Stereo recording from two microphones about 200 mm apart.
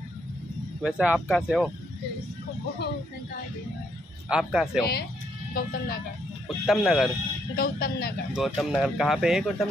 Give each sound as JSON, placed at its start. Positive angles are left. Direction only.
{"t": 0.8, "sound": "speech", "side_deg": -5}
{"t": 4.3, "sound": "speech", "side_deg": -5}
{"t": 5.5, "sound": "speech", "side_deg": 50}
{"t": 6.4, "sound": "speech", "side_deg": 0}
{"t": 7.5, "sound": "speech", "side_deg": 50}
{"t": 8.4, "sound": "speech", "side_deg": 0}